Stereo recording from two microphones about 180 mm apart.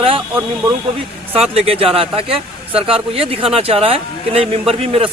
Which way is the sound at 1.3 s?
35° right (ahead or behind).